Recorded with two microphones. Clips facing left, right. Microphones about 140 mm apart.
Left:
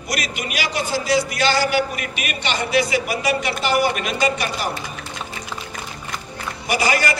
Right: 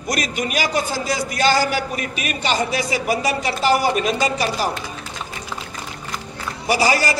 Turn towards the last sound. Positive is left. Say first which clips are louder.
# right 2 dB
turn(degrees=-35)  # may be behind; listen again after turning